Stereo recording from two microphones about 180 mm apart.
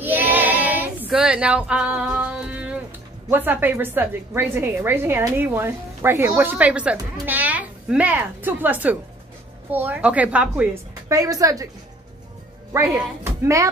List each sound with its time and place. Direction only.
0.0 s sheep: 10° right (ahead or behind)
3.3 s a woman's voice: 10° right (ahead or behind)
12.7 s a woman's voice: 15° right (ahead or behind)